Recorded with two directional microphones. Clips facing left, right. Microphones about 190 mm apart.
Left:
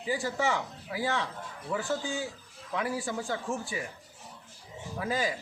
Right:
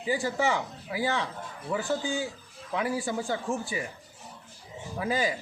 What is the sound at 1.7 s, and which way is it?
Speech, 15° right (ahead or behind).